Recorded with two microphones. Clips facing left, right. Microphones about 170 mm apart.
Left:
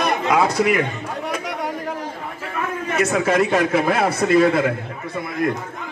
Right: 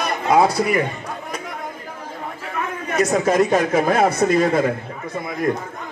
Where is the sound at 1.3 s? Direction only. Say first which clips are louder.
Left 5 dB; 80° left.